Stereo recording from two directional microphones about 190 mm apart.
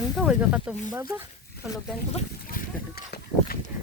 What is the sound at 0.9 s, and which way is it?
Speech, 20° right (ahead or behind).